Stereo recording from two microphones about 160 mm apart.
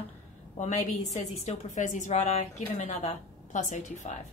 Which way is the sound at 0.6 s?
45° left (ahead or behind).